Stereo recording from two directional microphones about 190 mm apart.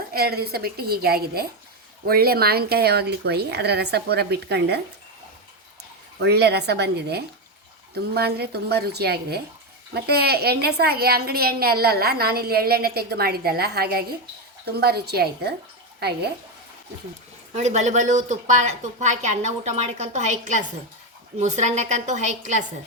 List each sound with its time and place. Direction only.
0.1 s a woman's voice: 55° right (ahead or behind)
6.1 s a woman's voice: 60° right (ahead or behind)
17.5 s a woman's voice: 35° right (ahead or behind)